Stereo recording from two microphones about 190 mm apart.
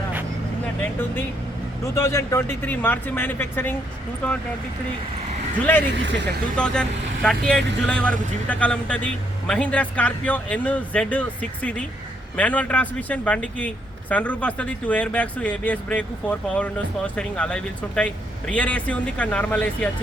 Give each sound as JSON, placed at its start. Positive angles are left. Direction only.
{"t": 2.0, "sound": "speech", "side_deg": 15}
{"t": 5.9, "sound": "speech", "side_deg": -70}
{"t": 6.6, "sound": "speech", "side_deg": 5}